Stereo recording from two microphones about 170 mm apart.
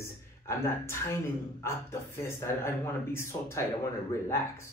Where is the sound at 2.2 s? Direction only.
15° left (ahead or behind).